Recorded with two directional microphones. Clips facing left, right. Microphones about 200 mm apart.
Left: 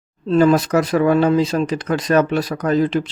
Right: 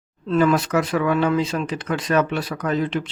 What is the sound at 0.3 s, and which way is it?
Speech, 35° left (ahead or behind).